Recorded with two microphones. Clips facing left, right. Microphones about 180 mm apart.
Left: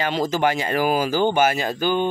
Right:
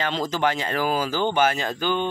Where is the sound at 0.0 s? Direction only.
10° left (ahead or behind).